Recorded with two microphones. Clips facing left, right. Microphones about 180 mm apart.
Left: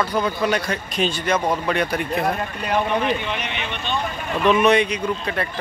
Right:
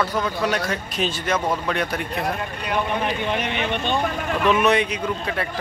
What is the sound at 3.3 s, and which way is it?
Speech, 50° right (ahead or behind).